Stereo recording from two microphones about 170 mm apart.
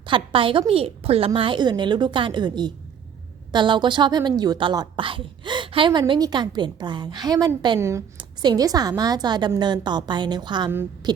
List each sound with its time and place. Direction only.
0.0 s a woman's voice: 30° right (ahead or behind)